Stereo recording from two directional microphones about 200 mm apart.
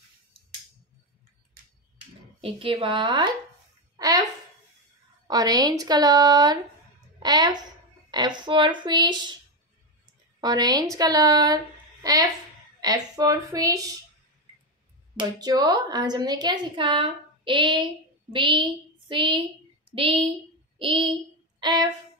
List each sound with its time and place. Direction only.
2.4 s speech: 25° right (ahead or behind)
3.9 s a sound: 20° right (ahead or behind)
5.3 s a woman's voice: 20° right (ahead or behind)
10.4 s a woman's voice: 20° right (ahead or behind)
15.1 s speech: 20° right (ahead or behind)
20.8 s speech: 25° right (ahead or behind)